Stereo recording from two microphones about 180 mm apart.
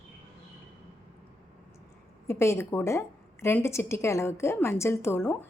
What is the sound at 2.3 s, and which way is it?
A woman's voice, 15° left (ahead or behind).